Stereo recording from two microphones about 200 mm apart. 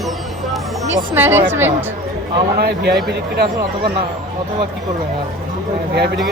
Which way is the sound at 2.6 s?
50° right (ahead or behind).